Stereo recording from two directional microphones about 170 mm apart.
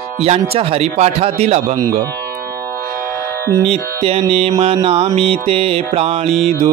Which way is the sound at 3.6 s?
40° right (ahead or behind).